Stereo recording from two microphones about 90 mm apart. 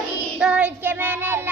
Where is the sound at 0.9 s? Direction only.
20° right (ahead or behind).